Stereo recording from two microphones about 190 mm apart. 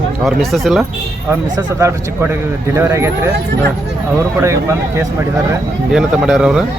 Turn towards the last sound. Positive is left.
turn(degrees=-5)  # may be behind; listen again after turning